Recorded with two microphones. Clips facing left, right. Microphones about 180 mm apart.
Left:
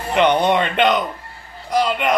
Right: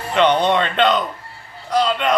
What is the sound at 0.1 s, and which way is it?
Speech, 10° left (ahead or behind).